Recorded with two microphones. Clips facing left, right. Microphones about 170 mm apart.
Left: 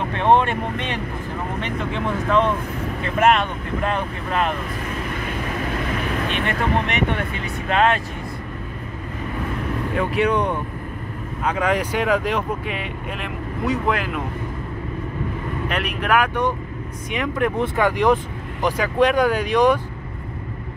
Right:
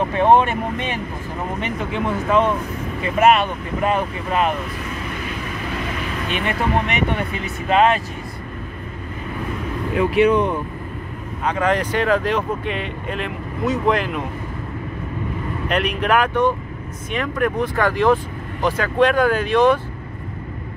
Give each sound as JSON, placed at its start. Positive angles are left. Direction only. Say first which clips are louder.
{"t": 0.1, "sound": "speech", "louder": "right 1 dB", "side_deg": -10}
{"t": 6.3, "sound": "speech", "louder": "right 3 dB", "side_deg": -5}
{"t": 10.1, "sound": "speech", "louder": "right 5 dB", "side_deg": 0}
{"t": 15.7, "sound": "speech", "louder": "right 3 dB", "side_deg": 5}